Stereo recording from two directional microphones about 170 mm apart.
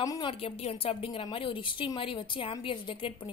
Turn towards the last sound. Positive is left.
turn(degrees=30)  # may be behind; listen again after turning